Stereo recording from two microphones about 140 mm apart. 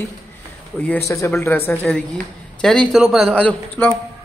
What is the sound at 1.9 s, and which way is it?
Speech, 5° left (ahead or behind).